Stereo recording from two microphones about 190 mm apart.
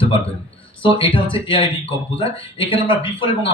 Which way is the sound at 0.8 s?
30° left (ahead or behind).